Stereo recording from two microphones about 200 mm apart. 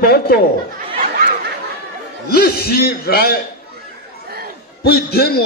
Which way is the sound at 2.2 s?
50° left (ahead or behind).